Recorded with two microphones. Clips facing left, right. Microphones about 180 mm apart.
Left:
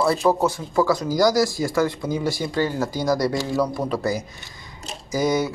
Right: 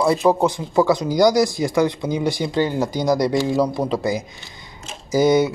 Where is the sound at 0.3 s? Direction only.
15° right (ahead or behind).